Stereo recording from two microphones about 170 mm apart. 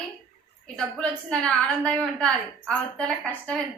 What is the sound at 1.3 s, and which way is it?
A woman's voice, 5° left (ahead or behind).